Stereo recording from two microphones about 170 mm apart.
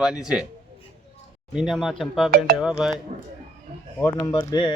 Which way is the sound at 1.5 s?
5° right (ahead or behind).